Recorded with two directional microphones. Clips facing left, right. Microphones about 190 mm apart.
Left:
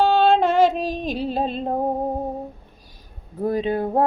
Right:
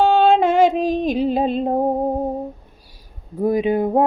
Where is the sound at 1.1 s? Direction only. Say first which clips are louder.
Right 6 dB; 15° right (ahead or behind).